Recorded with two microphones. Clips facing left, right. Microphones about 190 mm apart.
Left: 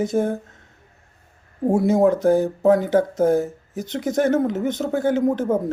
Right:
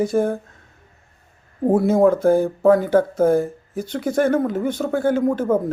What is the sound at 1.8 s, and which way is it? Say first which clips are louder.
Speech: right 1 dB; 55° right (ahead or behind).